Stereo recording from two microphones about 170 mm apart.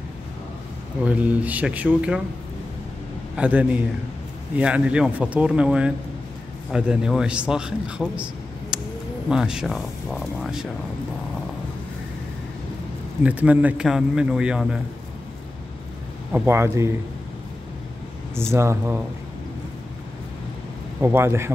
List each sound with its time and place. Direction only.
1.0 s speech: 10° right (ahead or behind)
3.3 s a man's voice: 10° right (ahead or behind)
13.2 s a man's voice: 10° right (ahead or behind)
16.3 s speech: 10° right (ahead or behind)
18.5 s speech: 15° right (ahead or behind)
21.0 s speech: 15° right (ahead or behind)